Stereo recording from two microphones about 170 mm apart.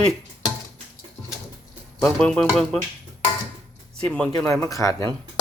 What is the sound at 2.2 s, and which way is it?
Speech, 5° left (ahead or behind).